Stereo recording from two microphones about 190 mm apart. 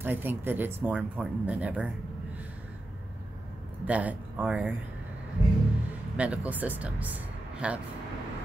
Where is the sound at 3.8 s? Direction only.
5° right (ahead or behind).